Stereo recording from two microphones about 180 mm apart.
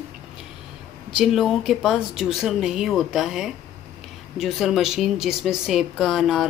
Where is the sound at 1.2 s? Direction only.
Centre (ahead or behind).